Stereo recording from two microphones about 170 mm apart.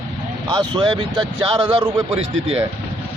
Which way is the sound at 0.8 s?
30° right (ahead or behind).